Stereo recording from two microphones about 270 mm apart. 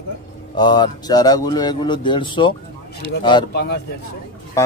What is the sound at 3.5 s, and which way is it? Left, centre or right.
Speech, left.